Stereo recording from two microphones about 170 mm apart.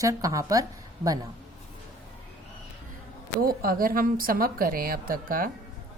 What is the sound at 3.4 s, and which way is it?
A woman's voice, 60° right (ahead or behind).